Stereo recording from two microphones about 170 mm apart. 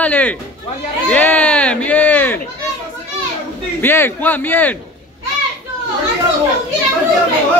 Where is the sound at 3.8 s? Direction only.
10° left (ahead or behind).